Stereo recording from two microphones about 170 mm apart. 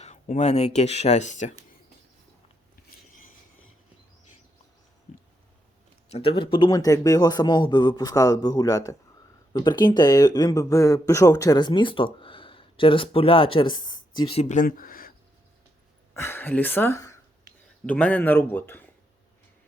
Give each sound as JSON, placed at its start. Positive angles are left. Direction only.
{"t": 0.0, "sound": "speech", "side_deg": 40}
{"t": 6.1, "sound": "a man's voice", "side_deg": 35}
{"t": 16.1, "sound": "speech", "side_deg": 15}